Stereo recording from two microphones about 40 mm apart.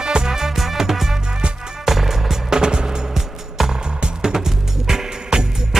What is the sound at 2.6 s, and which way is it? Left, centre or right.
Music, right.